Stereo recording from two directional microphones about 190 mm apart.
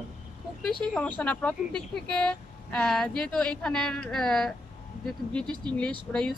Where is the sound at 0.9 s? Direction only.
10° left (ahead or behind).